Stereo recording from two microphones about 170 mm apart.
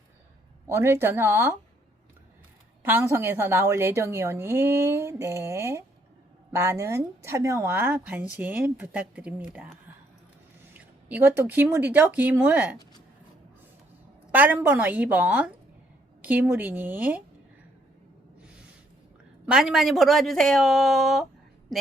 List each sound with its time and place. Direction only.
0.7 s speech: 15° right (ahead or behind)
2.8 s speech: 15° right (ahead or behind)
10.8 s speech: 10° right (ahead or behind)
14.3 s speech: 10° right (ahead or behind)
19.5 s a woman's voice: 5° right (ahead or behind)